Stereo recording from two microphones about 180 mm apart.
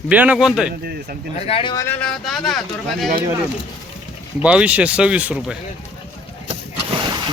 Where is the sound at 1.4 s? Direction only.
35° left (ahead or behind).